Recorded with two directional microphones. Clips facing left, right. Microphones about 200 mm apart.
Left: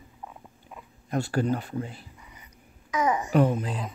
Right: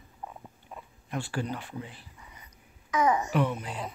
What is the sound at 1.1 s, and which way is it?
Speech, 40° left (ahead or behind).